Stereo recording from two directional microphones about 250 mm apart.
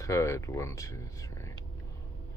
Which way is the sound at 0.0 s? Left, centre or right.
Centre.